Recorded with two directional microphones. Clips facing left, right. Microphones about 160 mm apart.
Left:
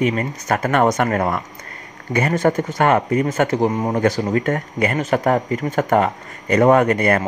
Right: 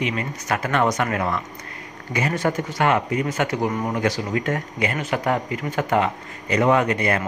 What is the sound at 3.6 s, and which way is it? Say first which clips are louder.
Speech: left 5 dB; 30° left (ahead or behind).